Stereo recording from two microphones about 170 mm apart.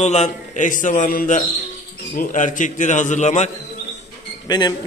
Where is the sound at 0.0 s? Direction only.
40° left (ahead or behind).